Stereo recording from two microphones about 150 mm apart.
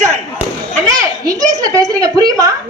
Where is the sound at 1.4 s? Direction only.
25° right (ahead or behind).